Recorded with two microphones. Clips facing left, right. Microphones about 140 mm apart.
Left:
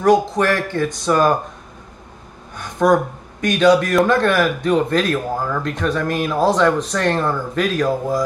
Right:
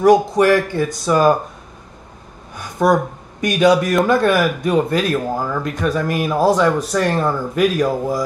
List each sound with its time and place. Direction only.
0.0 s speech: 10° right (ahead or behind)
2.5 s speech: 10° right (ahead or behind)